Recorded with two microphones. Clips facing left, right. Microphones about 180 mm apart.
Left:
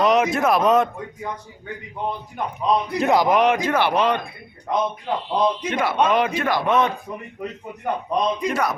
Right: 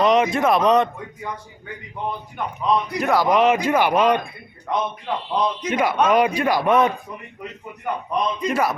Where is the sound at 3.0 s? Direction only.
20° left (ahead or behind).